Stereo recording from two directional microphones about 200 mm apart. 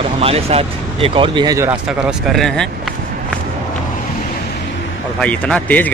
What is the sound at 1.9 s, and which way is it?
Speech, 5° right (ahead or behind).